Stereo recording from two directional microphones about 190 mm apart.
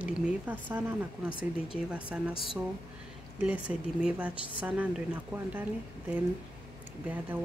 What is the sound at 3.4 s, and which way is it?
Speech, 5° right (ahead or behind).